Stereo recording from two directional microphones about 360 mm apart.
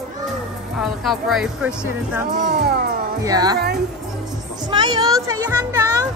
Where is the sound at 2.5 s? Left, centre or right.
Right.